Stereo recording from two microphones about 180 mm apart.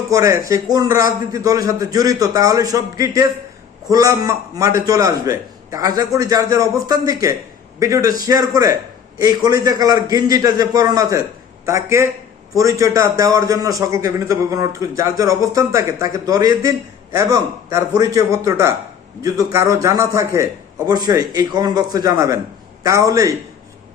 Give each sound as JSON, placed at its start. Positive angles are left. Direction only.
{"t": 0.1, "sound": "a man's voice", "side_deg": -20}